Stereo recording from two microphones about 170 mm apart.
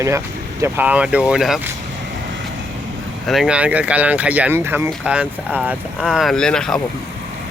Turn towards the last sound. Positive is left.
turn(degrees=5)  # may be behind; listen again after turning